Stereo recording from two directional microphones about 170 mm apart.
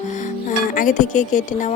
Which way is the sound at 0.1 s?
45° left (ahead or behind).